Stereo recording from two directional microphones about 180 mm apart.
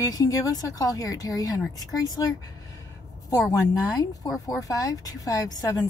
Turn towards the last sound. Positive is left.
turn(degrees=20)  # may be behind; listen again after turning